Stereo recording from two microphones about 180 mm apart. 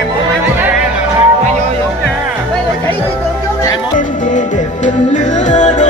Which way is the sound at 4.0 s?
45° left (ahead or behind).